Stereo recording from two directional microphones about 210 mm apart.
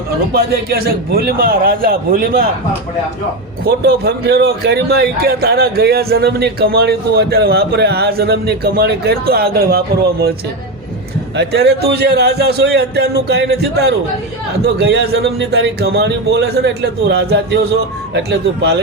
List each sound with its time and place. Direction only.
0.3 s a man's voice: 50° right (ahead or behind)
3.6 s a man's voice: 50° right (ahead or behind)
11.3 s a man's voice: 50° right (ahead or behind)